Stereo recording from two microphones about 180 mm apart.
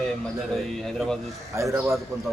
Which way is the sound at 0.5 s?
Centre (ahead or behind).